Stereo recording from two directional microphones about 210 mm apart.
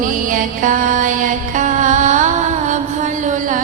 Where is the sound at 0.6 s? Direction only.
40° right (ahead or behind).